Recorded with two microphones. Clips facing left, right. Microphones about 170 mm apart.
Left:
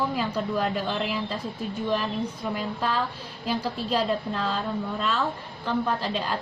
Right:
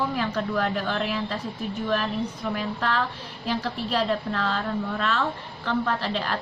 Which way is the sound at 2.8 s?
15° left (ahead or behind).